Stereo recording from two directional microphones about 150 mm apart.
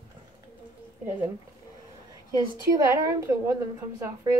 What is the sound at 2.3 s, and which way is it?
A woman's voice, 20° right (ahead or behind).